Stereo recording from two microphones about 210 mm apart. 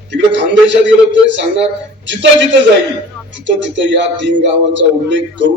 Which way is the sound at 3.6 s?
60° right (ahead or behind).